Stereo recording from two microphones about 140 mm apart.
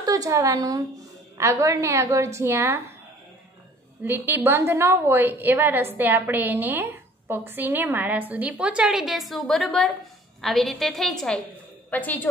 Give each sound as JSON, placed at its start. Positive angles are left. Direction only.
{"t": 0.0, "sound": "a woman's voice", "side_deg": -25}
{"t": 4.0, "sound": "a woman's voice", "side_deg": -15}